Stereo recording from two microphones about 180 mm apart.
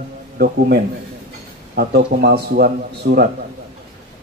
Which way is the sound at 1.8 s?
60° right (ahead or behind).